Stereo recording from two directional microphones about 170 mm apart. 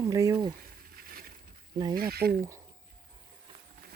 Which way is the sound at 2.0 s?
65° right (ahead or behind).